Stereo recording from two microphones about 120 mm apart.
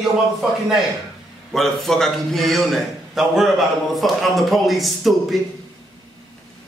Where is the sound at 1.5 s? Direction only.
Centre (ahead or behind).